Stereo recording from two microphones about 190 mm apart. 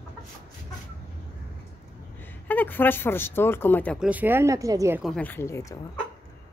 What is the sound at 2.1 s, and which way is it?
Speech, 10° left (ahead or behind).